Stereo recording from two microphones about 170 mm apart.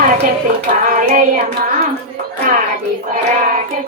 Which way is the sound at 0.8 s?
50° right (ahead or behind).